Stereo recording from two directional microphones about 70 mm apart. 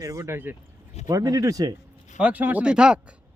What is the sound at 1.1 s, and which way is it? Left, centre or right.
Speech, right.